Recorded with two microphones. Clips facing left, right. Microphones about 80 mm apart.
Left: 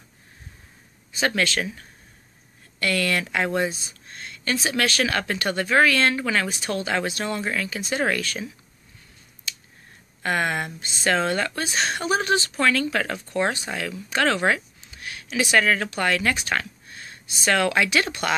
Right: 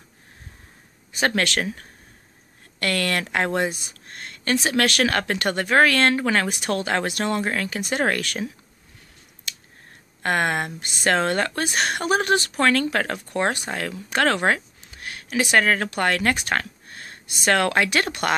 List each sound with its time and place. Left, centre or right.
1.2 s speech: right
9.5 s scissors: right
10.2 s speech: right